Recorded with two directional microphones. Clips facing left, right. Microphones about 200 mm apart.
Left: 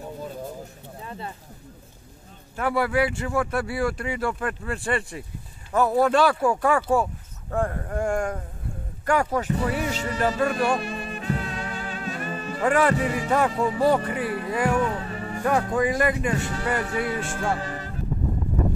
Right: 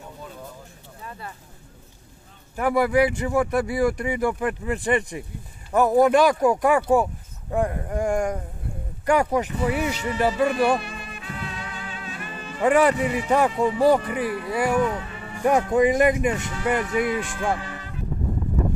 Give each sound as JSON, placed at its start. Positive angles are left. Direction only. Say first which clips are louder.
{"t": 1.0, "sound": "a sound", "louder": "left 2 dB", "side_deg": 25}
{"t": 2.5, "sound": "speech", "louder": "right 3 dB", "side_deg": -15}
{"t": 9.8, "sound": "speech", "louder": "right 2 dB", "side_deg": 40}
{"t": 10.5, "sound": "music", "louder": "right 2 dB", "side_deg": 40}
{"t": 12.6, "sound": "speech", "louder": "right 3 dB", "side_deg": -15}
{"t": 14.0, "sound": "speech", "louder": "right 1 dB", "side_deg": 40}
{"t": 14.5, "sound": "speech", "louder": "right 1 dB", "side_deg": -10}
{"t": 15.0, "sound": "music", "louder": "left 3 dB", "side_deg": 40}
{"t": 15.4, "sound": "speech", "louder": "right 4 dB", "side_deg": -15}
{"t": 16.8, "sound": "speech", "louder": "right 3 dB", "side_deg": 35}
{"t": 17.2, "sound": "speech", "louder": "right 1 dB", "side_deg": -15}
{"t": 17.6, "sound": "music", "louder": "left 3 dB", "side_deg": 40}